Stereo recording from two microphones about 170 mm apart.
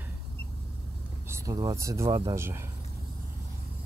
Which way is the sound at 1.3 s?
20° right (ahead or behind).